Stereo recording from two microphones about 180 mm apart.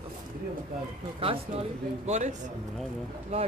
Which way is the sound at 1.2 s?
35° right (ahead or behind).